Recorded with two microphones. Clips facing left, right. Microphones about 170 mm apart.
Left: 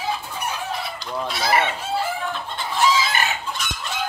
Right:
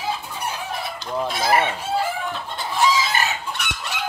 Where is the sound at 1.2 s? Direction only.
50° right (ahead or behind).